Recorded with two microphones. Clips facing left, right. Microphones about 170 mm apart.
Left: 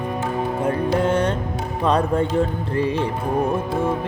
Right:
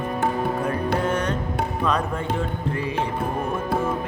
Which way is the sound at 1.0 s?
30° left (ahead or behind).